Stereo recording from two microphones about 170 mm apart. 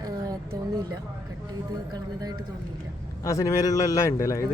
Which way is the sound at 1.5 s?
20° right (ahead or behind).